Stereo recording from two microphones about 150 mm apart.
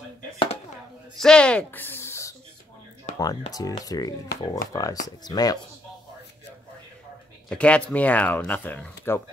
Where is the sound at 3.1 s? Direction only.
55° left (ahead or behind).